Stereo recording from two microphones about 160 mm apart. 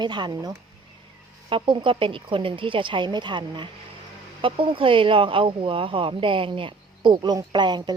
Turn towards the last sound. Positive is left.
turn(degrees=-30)  # may be behind; listen again after turning